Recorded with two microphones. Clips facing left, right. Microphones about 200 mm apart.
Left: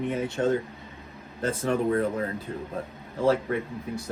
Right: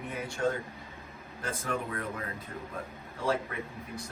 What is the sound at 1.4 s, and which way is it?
Speech, 30° left (ahead or behind).